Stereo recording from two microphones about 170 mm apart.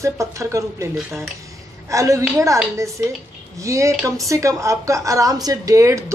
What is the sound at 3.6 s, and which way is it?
Speech, 15° right (ahead or behind).